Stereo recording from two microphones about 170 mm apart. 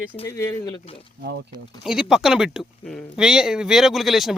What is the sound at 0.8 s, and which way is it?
Speech, 35° left (ahead or behind).